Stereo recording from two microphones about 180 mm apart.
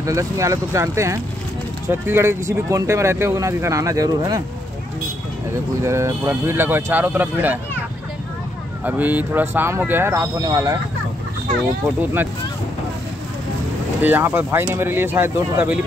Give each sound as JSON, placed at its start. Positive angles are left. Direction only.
{"t": 0.0, "sound": "speech", "side_deg": -15}
{"t": 5.8, "sound": "speech", "side_deg": -15}
{"t": 8.8, "sound": "speech", "side_deg": -10}
{"t": 12.0, "sound": "speech", "side_deg": -10}
{"t": 14.0, "sound": "speech", "side_deg": -10}